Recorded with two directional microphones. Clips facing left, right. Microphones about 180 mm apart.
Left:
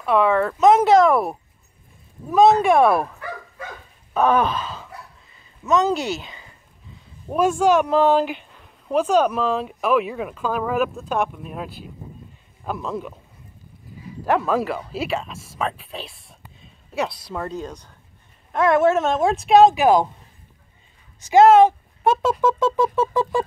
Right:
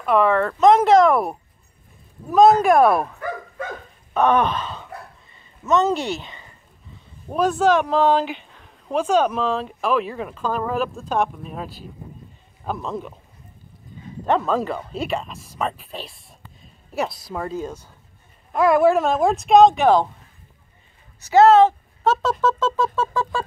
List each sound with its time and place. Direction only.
0.0 s speech: centre (ahead or behind)
3.2 s bow-wow: 50° right (ahead or behind)
4.1 s groan: 5° left (ahead or behind)
5.6 s speech: centre (ahead or behind)
14.2 s speech: 5° left (ahead or behind)
21.3 s speech: 10° left (ahead or behind)